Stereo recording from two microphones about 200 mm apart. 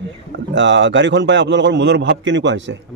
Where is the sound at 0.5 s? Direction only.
65° right (ahead or behind).